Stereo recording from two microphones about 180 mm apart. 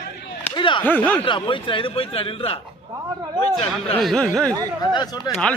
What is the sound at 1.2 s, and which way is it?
Speech, 30° left (ahead or behind).